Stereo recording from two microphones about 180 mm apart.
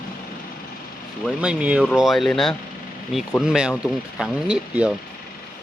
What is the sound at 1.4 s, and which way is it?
Speech, 5° right (ahead or behind).